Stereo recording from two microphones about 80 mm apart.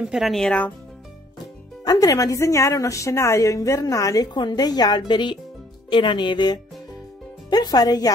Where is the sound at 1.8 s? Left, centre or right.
Left.